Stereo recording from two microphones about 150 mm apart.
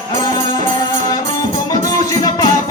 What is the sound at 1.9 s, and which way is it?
Music, 25° left (ahead or behind).